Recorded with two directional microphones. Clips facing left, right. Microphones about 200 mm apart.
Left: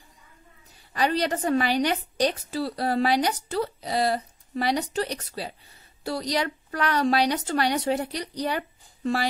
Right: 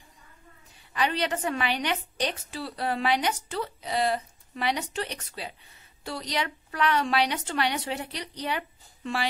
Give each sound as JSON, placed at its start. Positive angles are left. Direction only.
{"t": 0.9, "sound": "a woman's voice", "side_deg": 40}